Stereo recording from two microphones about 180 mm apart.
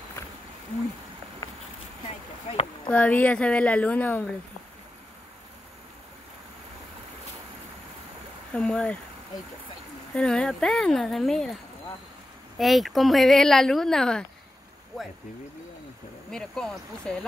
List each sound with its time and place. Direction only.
1.4 s a sound: 20° left (ahead or behind)
2.5 s a sound: 35° left (ahead or behind)
2.9 s speech: 10° left (ahead or behind)
8.5 s speech: 5° left (ahead or behind)
10.1 s speech: 5° left (ahead or behind)
12.5 s speech: centre (ahead or behind)
16.3 s speech: 5° left (ahead or behind)